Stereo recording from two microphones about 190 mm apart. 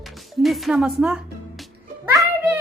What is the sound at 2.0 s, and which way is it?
Music, 15° right (ahead or behind).